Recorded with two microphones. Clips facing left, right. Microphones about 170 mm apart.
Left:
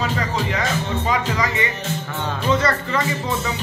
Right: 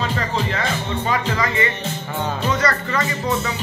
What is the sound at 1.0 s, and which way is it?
Speech, 15° left (ahead or behind).